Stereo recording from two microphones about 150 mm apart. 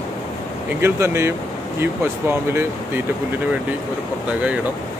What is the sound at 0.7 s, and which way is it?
Speech, 15° right (ahead or behind).